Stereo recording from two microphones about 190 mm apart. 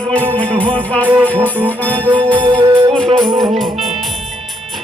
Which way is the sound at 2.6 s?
25° right (ahead or behind).